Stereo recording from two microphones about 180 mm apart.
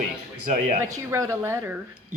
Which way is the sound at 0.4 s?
45° right (ahead or behind).